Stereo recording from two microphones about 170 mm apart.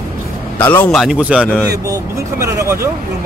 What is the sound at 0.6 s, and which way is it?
Speech, 10° left (ahead or behind).